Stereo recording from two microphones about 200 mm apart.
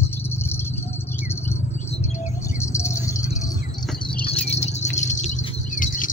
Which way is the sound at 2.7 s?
15° left (ahead or behind).